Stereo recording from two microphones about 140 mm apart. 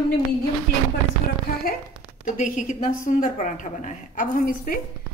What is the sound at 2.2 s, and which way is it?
A woman's voice, 65° left (ahead or behind).